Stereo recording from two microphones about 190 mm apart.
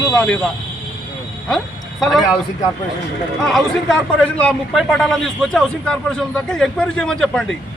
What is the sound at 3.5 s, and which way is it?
A man's voice, 5° left (ahead or behind).